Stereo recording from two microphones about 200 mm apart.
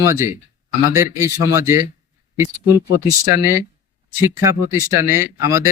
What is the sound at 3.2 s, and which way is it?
Speech, 15° right (ahead or behind).